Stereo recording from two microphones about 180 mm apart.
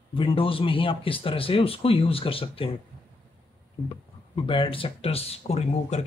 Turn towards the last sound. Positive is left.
turn(degrees=35)  # may be behind; listen again after turning